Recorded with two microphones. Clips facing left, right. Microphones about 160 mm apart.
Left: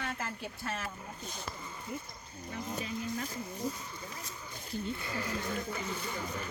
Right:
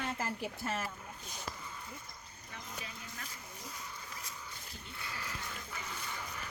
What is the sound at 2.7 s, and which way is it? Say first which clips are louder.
Vehicle: left 12 dB; 30° left (ahead or behind).